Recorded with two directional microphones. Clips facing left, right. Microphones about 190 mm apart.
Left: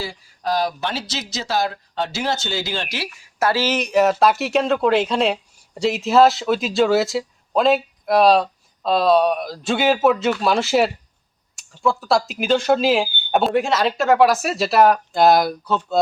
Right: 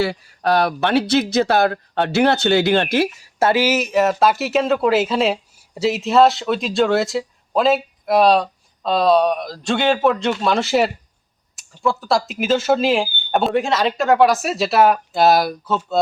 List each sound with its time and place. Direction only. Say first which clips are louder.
0.0 s speech: right 7 dB; 65° right (ahead or behind)
3.1 s speech: right 3 dB; 25° right (ahead or behind)
3.6 s speech: right 1 dB; 5° right (ahead or behind)